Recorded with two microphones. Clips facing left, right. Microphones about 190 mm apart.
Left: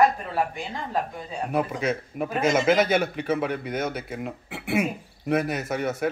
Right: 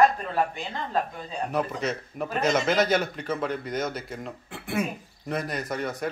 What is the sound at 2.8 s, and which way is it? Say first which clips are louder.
Speech: left 1 dB; 55° left (ahead or behind).